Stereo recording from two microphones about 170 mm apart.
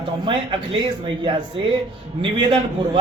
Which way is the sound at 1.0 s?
30° right (ahead or behind).